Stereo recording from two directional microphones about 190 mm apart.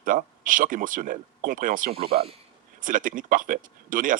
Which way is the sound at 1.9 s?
30° right (ahead or behind).